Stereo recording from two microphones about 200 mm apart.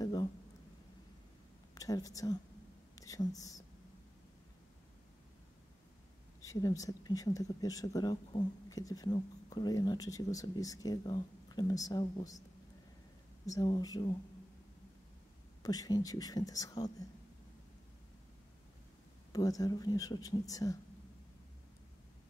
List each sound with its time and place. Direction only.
0.0 s a sound: 20° left (ahead or behind)
1.8 s a woman's voice: 15° left (ahead or behind)
6.4 s speech: 15° left (ahead or behind)
13.5 s speech: 20° left (ahead or behind)
15.6 s speech: 20° left (ahead or behind)
19.3 s speech: 15° left (ahead or behind)